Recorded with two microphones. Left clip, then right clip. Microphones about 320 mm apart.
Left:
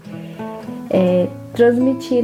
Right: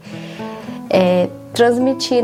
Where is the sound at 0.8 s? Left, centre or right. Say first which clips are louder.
Right 2 dB; right.